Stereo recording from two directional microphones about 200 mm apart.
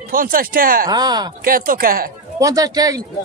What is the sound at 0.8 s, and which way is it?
Speech, 20° right (ahead or behind).